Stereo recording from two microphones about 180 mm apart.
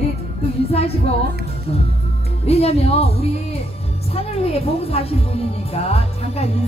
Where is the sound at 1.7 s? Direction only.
35° left (ahead or behind).